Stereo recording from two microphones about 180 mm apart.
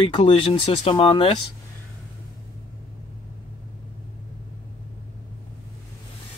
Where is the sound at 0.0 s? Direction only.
25° left (ahead or behind).